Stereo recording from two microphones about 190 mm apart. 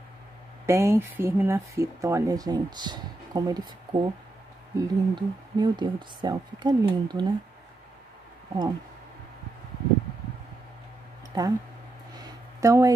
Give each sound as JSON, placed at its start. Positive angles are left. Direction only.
{"t": 0.7, "sound": "speech", "side_deg": -15}
{"t": 11.3, "sound": "speech", "side_deg": -20}
{"t": 12.1, "sound": "a sound", "side_deg": -20}